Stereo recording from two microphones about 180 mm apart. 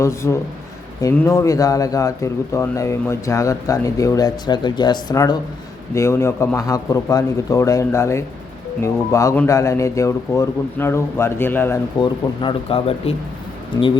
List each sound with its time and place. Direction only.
0.0 s speech: 15° left (ahead or behind)
11.9 s speech: 25° left (ahead or behind)